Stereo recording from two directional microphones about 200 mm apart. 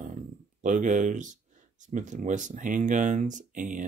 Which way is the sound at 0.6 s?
40° right (ahead or behind).